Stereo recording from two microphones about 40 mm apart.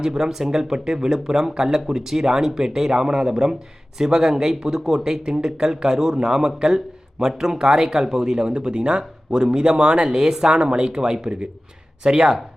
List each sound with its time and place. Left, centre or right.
0.0 s speech: centre